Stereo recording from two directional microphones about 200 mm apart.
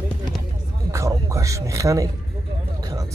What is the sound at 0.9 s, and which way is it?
A man's voice, 15° right (ahead or behind).